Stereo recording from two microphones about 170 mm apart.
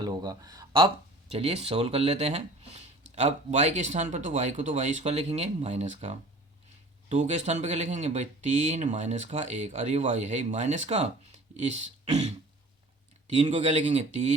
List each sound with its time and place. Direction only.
0.0 s speech: 25° right (ahead or behind)
1.3 s speech: 35° right (ahead or behind)
13.3 s speech: 40° right (ahead or behind)